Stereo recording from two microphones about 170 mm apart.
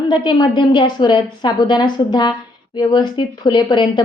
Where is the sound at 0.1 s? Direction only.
25° left (ahead or behind).